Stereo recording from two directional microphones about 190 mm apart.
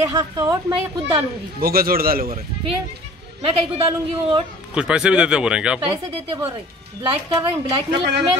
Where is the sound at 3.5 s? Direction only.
30° right (ahead or behind).